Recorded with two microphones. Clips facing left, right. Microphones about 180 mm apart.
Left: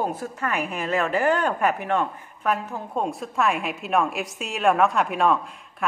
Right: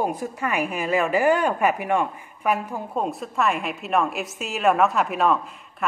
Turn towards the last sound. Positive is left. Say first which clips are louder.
# even
turn(degrees=0)  # may be behind; listen again after turning